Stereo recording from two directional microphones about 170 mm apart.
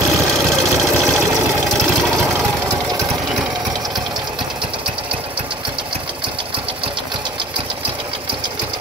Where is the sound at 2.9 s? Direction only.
20° right (ahead or behind).